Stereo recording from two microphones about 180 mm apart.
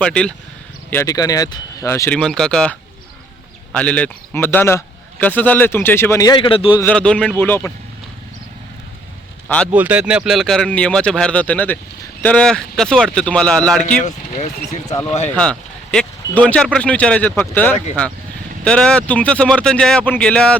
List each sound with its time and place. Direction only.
0.0 s speech: 5° left (ahead or behind)
0.9 s speech: 15° left (ahead or behind)
6.7 s speech: 5° left (ahead or behind)
9.7 s speech: 10° right (ahead or behind)
14.0 s speech: 40° left (ahead or behind)
14.8 s speech: 15° left (ahead or behind)
15.4 s speech: 5° left (ahead or behind)